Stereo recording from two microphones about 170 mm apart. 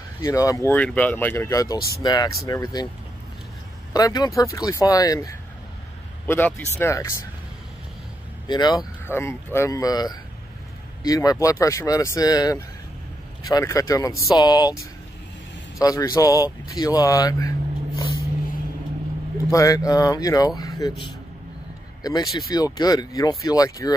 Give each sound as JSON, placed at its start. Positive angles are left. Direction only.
{"t": 0.2, "sound": "speech", "side_deg": 20}
{"t": 3.9, "sound": "speech", "side_deg": 25}
{"t": 8.5, "sound": "speech", "side_deg": 25}
{"t": 9.0, "sound": "speech", "side_deg": 15}
{"t": 15.8, "sound": "speech", "side_deg": 20}
{"t": 16.6, "sound": "vehicle", "side_deg": 20}
{"t": 19.5, "sound": "speech", "side_deg": 20}
{"t": 22.0, "sound": "speech", "side_deg": 20}